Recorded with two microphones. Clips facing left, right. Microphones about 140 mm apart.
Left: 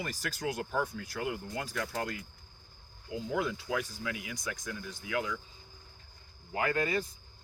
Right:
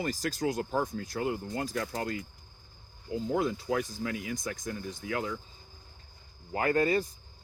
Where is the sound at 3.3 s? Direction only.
40° right (ahead or behind).